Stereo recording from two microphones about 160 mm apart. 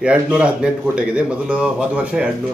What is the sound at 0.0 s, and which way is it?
Speech, 5° right (ahead or behind).